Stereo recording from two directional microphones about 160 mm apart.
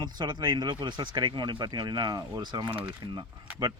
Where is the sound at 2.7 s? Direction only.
10° right (ahead or behind).